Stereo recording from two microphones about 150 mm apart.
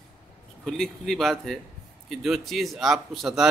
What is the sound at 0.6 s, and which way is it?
A man's voice, centre (ahead or behind).